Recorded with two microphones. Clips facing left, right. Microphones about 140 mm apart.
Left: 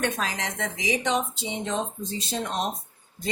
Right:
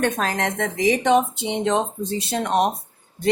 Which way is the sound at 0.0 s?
55° right (ahead or behind).